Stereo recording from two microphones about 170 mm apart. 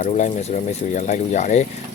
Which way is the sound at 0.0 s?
45° left (ahead or behind).